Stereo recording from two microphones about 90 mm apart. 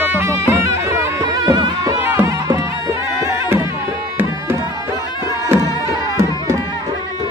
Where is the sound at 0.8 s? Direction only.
35° right (ahead or behind).